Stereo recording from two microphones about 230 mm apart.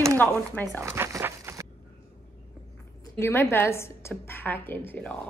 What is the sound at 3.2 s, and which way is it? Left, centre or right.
A woman's voice, centre.